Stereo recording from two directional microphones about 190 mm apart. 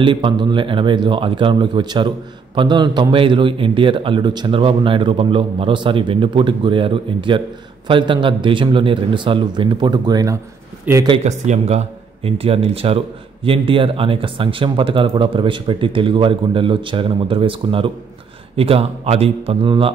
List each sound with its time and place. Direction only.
0.0 s a man's voice: 25° right (ahead or behind)
11.2 s a man's voice: 35° right (ahead or behind)